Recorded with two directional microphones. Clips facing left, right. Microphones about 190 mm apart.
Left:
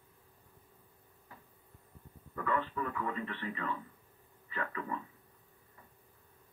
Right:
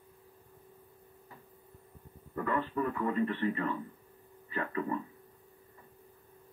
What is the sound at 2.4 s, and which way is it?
Speech, 40° right (ahead or behind).